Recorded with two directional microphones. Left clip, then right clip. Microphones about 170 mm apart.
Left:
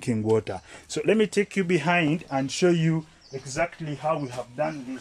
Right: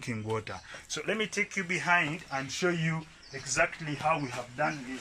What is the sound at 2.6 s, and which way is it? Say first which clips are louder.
Speech: left 8 dB; 35° left (ahead or behind).